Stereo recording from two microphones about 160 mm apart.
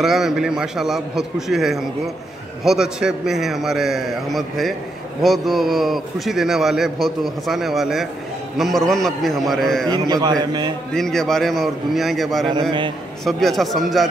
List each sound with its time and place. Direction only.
0.0 s a man's voice: centre (ahead or behind)
9.8 s a man's voice: 25° right (ahead or behind)
10.9 s a man's voice: 5° left (ahead or behind)